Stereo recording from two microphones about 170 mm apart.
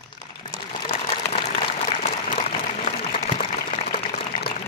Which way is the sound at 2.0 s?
40° left (ahead or behind).